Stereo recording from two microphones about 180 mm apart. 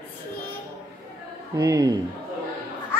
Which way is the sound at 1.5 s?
20° right (ahead or behind).